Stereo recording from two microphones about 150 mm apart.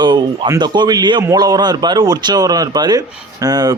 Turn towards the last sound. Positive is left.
turn(degrees=-25)  # may be behind; listen again after turning